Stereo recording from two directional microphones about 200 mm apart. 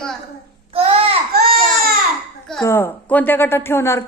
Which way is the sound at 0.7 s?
30° right (ahead or behind).